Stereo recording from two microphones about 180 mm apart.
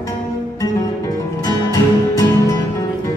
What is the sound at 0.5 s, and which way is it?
Music, 20° left (ahead or behind).